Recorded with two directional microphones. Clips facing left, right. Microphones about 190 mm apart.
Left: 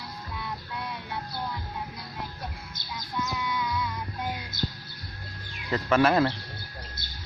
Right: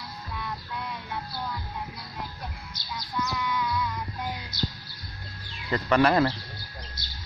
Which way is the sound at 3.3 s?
15° left (ahead or behind).